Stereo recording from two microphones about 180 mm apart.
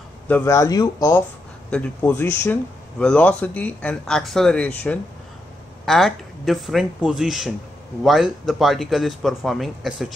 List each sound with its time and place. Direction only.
0.3 s a man's voice: 15° left (ahead or behind); by 10.1 s centre (ahead or behind)